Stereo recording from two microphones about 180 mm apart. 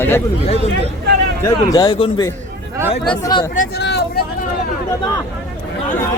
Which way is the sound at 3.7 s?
65° left (ahead or behind).